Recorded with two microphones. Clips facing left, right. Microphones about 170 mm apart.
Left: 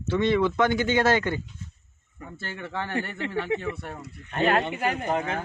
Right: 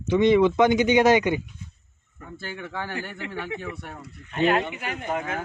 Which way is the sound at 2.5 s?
5° right (ahead or behind).